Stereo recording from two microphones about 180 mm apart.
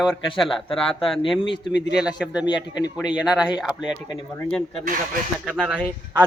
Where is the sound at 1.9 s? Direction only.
Centre (ahead or behind).